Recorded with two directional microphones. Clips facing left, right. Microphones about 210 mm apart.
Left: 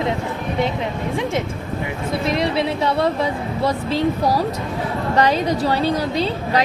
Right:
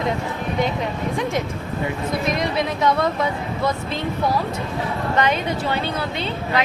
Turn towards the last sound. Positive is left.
turn(degrees=40)  # may be behind; listen again after turning